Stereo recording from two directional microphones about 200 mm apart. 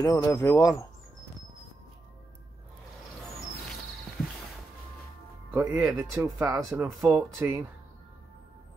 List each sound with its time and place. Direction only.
0.0 s speech: 15° left (ahead or behind)
5.5 s speech: 15° right (ahead or behind)